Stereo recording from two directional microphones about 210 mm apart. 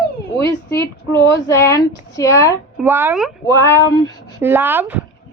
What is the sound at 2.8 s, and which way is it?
Speech, 10° right (ahead or behind).